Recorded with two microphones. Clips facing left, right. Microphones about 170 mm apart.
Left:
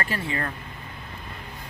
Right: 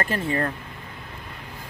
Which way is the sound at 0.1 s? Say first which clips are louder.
Right 5 dB; 40° right (ahead or behind).